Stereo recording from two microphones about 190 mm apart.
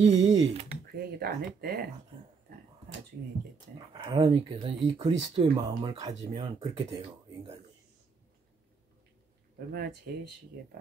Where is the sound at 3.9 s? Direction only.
25° right (ahead or behind).